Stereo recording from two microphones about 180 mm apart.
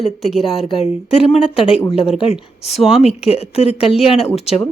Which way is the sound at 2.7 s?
Centre (ahead or behind).